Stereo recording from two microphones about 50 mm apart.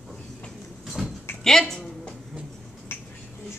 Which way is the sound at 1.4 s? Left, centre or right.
Centre.